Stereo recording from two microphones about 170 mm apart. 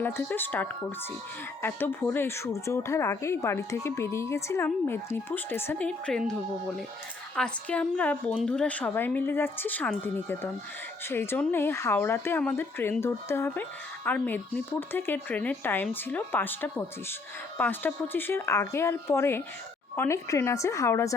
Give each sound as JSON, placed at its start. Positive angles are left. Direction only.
{"t": 0.0, "sound": "a woman's voice", "side_deg": 10}
{"t": 7.3, "sound": "a woman's voice", "side_deg": 5}